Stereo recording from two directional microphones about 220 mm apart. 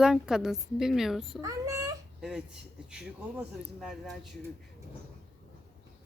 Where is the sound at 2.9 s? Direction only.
5° right (ahead or behind).